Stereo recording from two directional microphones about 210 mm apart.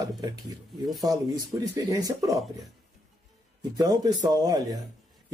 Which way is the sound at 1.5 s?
15° right (ahead or behind).